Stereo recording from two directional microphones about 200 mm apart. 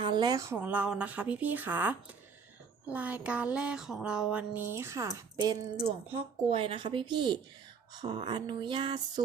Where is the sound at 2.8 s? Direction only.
5° right (ahead or behind).